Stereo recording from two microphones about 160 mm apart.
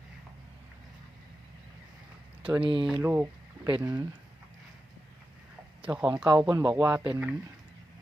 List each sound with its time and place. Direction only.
2.6 s speech: 35° right (ahead or behind)
3.0 s a sound: 10° right (ahead or behind)
3.8 s speech: 10° right (ahead or behind)
5.8 s speech: 5° right (ahead or behind)